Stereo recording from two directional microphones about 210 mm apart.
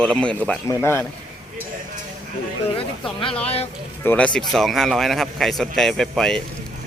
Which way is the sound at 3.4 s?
30° left (ahead or behind).